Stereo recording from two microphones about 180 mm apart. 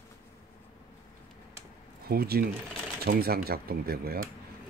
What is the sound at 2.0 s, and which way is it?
Speech, 60° right (ahead or behind).